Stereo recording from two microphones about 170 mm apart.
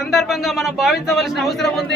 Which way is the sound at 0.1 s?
Centre (ahead or behind).